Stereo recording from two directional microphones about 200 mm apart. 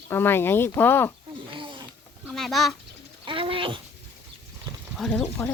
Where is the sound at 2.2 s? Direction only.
Centre (ahead or behind).